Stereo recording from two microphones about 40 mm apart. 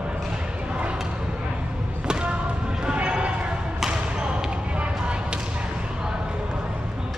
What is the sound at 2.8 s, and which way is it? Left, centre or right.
Basketball bounce, right.